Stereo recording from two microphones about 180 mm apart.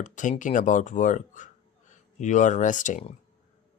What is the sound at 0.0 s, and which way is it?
Speech, 45° left (ahead or behind).